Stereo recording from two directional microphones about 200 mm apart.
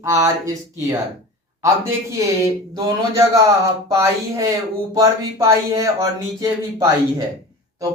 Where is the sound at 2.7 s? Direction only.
15° right (ahead or behind).